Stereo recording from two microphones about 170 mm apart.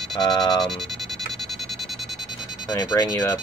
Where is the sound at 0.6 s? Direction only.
Centre (ahead or behind).